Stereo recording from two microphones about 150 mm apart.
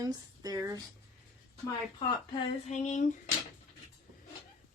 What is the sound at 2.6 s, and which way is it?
Speech, 50° left (ahead or behind).